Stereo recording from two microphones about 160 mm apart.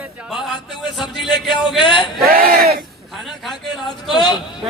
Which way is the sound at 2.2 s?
70° right (ahead or behind).